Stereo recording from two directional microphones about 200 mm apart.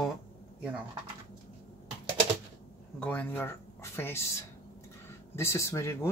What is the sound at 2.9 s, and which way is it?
Speech, 5° left (ahead or behind).